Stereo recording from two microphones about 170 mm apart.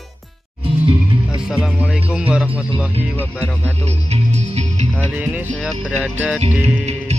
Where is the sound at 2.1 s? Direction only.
5° right (ahead or behind).